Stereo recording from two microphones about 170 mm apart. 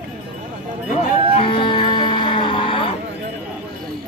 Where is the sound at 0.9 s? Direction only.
30° left (ahead or behind).